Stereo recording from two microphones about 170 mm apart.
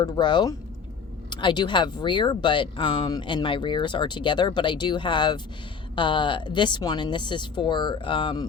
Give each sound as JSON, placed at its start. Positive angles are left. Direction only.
{"t": 0.0, "sound": "speech", "side_deg": 25}